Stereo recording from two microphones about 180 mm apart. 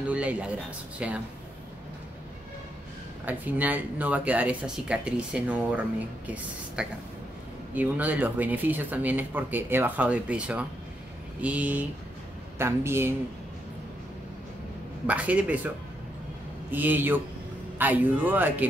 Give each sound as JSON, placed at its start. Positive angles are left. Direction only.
{"t": 0.1, "sound": "speech", "side_deg": -5}
{"t": 3.3, "sound": "speech", "side_deg": -10}
{"t": 15.0, "sound": "speech", "side_deg": -5}
{"t": 16.7, "sound": "speech", "side_deg": -10}